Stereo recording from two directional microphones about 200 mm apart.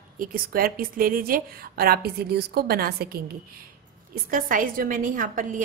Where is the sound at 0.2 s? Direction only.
45° right (ahead or behind).